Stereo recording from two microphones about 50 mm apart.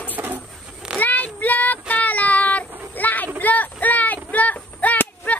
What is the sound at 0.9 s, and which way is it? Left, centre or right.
Child singing, left.